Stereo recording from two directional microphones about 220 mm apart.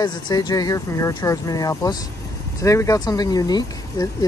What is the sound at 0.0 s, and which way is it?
Speech, 20° left (ahead or behind).